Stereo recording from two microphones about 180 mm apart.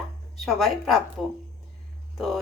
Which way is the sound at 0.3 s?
Centre (ahead or behind).